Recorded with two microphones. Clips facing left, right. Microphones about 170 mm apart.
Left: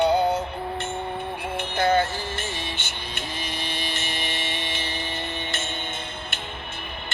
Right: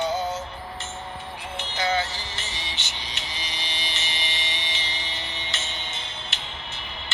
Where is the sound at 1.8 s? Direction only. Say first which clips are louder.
Left 5 dB; 55° left (ahead or behind).